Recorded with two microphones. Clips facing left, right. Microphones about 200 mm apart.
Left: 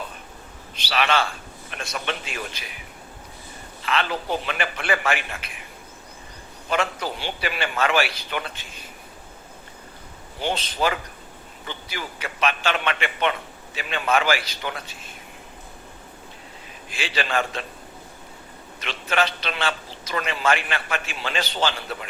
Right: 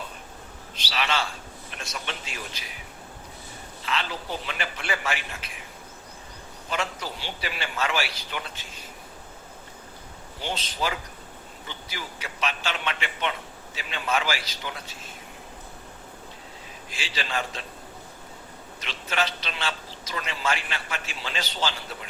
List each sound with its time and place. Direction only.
0.9 s a man's voice: 55° left (ahead or behind)
3.8 s a man's voice: 60° left (ahead or behind)
6.7 s a man's voice: 60° left (ahead or behind)
10.4 s a man's voice: 55° left (ahead or behind)
16.9 s a man's voice: 55° left (ahead or behind)
18.8 s a man's voice: 60° left (ahead or behind)